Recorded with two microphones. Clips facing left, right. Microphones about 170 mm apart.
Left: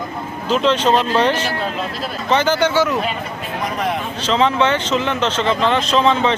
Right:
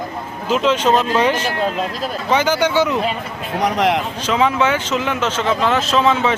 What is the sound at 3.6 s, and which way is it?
Speech, 80° right.